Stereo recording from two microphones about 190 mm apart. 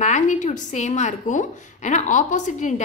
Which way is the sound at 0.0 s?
40° left (ahead or behind).